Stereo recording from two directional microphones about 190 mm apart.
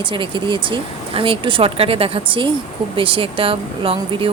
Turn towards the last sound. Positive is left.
turn(degrees=-30)  # may be behind; listen again after turning